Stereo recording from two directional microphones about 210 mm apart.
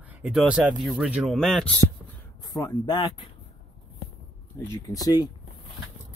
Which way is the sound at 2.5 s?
20° left (ahead or behind).